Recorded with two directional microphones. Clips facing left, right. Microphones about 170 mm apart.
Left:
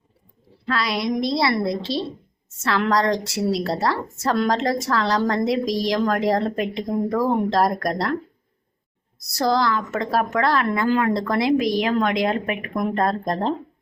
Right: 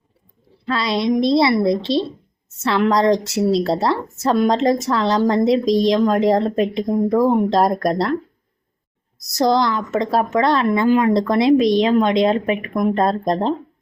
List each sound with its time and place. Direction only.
0.7 s a woman's voice: 25° right (ahead or behind)
9.4 s a woman's voice: 20° right (ahead or behind)